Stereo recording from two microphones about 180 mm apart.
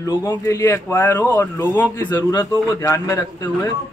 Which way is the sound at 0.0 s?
20° left (ahead or behind).